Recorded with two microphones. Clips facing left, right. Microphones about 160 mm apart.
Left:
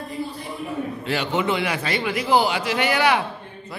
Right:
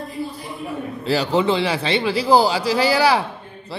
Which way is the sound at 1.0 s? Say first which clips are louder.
Right 6 dB; 35° right (ahead or behind).